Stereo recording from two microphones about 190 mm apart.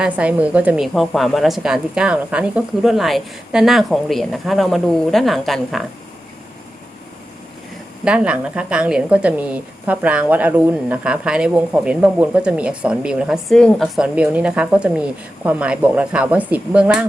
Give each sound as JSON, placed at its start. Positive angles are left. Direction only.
{"t": 0.0, "sound": "a woman's voice", "side_deg": -5}
{"t": 8.0, "sound": "a woman's voice", "side_deg": -5}